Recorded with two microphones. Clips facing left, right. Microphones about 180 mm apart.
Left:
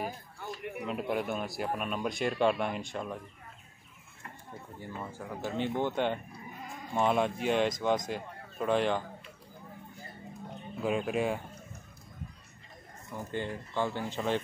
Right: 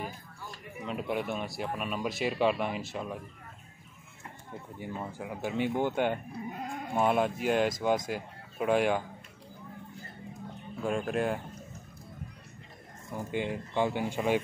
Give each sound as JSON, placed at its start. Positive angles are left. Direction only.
{"t": 0.0, "sound": "a sound", "side_deg": 65}
{"t": 0.8, "sound": "speech", "side_deg": 0}
{"t": 4.7, "sound": "speech", "side_deg": -15}
{"t": 6.5, "sound": "sheep", "side_deg": -65}
{"t": 6.9, "sound": "speech", "side_deg": -5}
{"t": 10.8, "sound": "speech", "side_deg": 5}
{"t": 13.1, "sound": "speech", "side_deg": -15}